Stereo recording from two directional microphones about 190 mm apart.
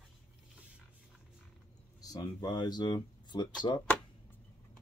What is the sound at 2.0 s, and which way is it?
Speech, 20° left (ahead or behind).